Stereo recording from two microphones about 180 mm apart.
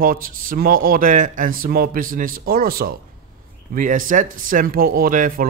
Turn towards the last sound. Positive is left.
turn(degrees=-50)  # may be behind; listen again after turning